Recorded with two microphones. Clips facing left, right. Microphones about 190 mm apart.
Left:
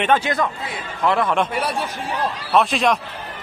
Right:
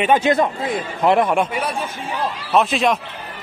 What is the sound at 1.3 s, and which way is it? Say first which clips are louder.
A man's voice: right 1 dB; 10° right (ahead or behind).